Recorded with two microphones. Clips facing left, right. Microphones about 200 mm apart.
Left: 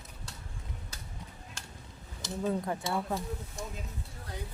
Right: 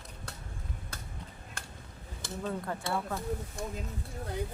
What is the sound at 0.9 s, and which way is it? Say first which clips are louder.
Chop: right 2 dB; 55° right (ahead or behind).